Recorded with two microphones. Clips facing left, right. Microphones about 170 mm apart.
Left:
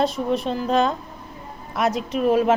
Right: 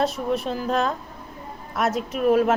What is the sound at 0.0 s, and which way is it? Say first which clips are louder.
A woman's voice: left 2 dB; 5° right (ahead or behind).